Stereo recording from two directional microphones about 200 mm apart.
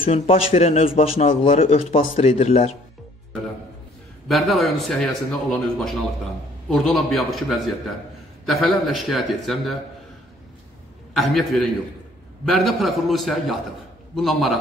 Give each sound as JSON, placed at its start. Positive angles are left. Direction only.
{"t": 0.0, "sound": "speech", "side_deg": 30}
{"t": 4.3, "sound": "speech", "side_deg": 0}
{"t": 11.1, "sound": "speech", "side_deg": 0}